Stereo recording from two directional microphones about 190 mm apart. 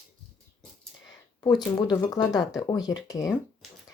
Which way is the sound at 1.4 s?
20° left (ahead or behind).